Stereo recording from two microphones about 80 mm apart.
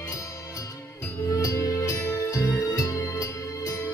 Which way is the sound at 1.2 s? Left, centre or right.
Left.